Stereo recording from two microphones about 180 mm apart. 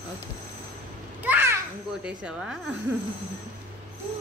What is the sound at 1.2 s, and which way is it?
Children playing, 10° right (ahead or behind).